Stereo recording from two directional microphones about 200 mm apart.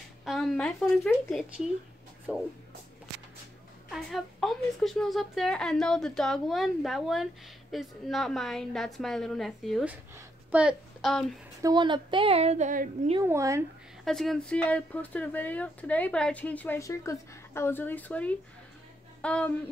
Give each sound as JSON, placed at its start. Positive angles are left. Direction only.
{"t": 0.2, "sound": "a woman's voice", "side_deg": 0}
{"t": 3.9, "sound": "a woman's voice", "side_deg": 0}
{"t": 11.6, "sound": "speech", "side_deg": -20}
{"t": 13.2, "sound": "speech", "side_deg": -15}
{"t": 14.0, "sound": "speech", "side_deg": 0}